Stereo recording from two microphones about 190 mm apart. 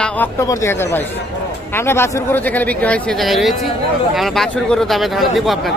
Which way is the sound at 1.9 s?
10° left (ahead or behind).